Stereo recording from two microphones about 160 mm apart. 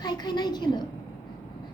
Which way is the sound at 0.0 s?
25° left (ahead or behind).